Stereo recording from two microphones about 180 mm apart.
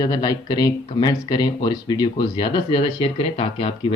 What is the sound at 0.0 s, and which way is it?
Speech, 25° left (ahead or behind).